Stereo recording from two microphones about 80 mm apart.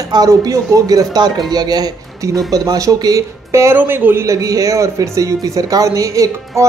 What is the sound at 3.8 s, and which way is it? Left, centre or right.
Speech, right.